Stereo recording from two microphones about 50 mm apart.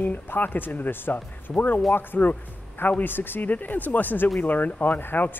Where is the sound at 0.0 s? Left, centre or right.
Left.